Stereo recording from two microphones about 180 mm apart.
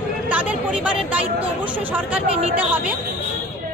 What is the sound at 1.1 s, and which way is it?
A woman's voice, 10° right (ahead or behind).